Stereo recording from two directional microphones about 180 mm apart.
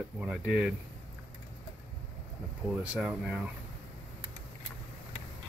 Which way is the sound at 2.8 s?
5° right (ahead or behind).